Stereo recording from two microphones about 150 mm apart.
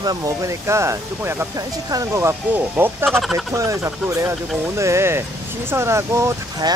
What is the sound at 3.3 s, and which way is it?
Speech, 20° right (ahead or behind).